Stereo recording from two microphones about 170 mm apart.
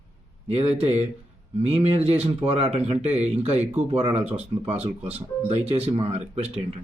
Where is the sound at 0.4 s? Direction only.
40° right (ahead or behind).